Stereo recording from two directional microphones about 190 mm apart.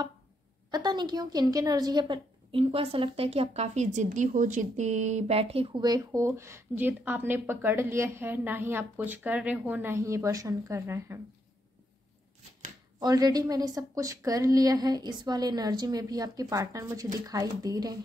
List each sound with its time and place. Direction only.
0.7 s a woman's voice: 20° right (ahead or behind)
13.0 s a woman's voice: 20° right (ahead or behind)